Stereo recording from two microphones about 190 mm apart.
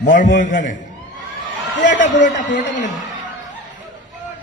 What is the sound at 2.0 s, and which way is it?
Speech, 40° left (ahead or behind).